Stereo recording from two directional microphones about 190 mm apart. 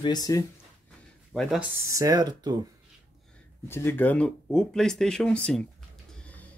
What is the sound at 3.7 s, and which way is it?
Speech, 10° left (ahead or behind).